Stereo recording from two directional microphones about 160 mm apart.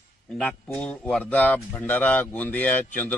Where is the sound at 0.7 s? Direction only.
10° left (ahead or behind).